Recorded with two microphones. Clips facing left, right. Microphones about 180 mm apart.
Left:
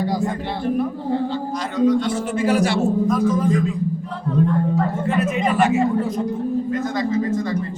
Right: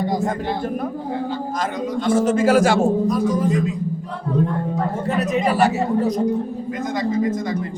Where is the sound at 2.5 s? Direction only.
90° right.